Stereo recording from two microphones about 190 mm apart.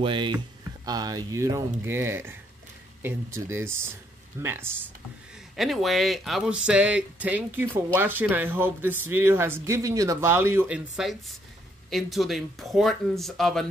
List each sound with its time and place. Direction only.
0.0 s speech: 25° right (ahead or behind)
5.6 s speech: centre (ahead or behind)